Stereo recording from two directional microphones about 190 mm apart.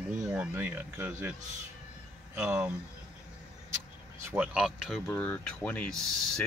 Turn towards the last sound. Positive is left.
turn(degrees=0)  # may be behind; listen again after turning